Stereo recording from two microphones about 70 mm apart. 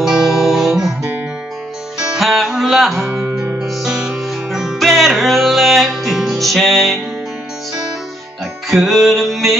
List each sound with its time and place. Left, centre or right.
0.0 s music: centre
2.0 s music: centre
3.1 s music: right
3.6 s music: centre
8.6 s music: centre